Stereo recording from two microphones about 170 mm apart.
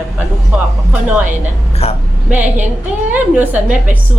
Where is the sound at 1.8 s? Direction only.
35° left (ahead or behind).